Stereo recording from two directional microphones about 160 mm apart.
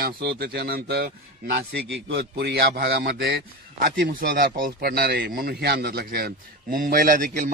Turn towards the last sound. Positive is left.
turn(degrees=-60)  # may be behind; listen again after turning